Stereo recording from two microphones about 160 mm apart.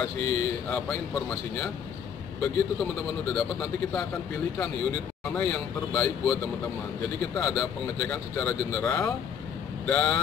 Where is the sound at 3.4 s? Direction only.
5° left (ahead or behind).